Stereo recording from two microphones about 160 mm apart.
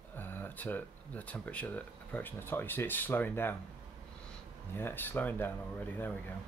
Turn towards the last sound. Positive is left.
turn(degrees=10)  # may be behind; listen again after turning